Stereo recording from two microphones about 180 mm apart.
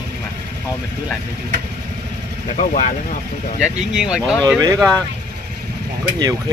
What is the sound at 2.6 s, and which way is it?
Speech, 45° left (ahead or behind).